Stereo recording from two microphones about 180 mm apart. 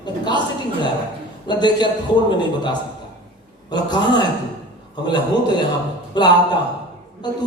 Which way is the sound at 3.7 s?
25° left (ahead or behind).